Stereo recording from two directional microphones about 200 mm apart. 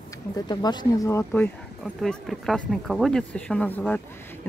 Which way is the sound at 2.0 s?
Centre (ahead or behind).